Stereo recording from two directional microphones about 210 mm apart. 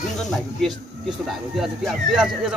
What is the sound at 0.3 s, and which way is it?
Speech, centre (ahead or behind).